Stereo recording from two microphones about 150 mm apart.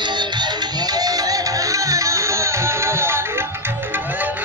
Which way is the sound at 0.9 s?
25° right (ahead or behind).